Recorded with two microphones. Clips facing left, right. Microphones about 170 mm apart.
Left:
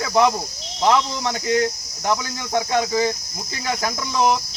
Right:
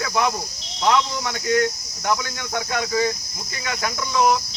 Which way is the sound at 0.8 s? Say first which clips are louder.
Left 2 dB; 30° left (ahead or behind).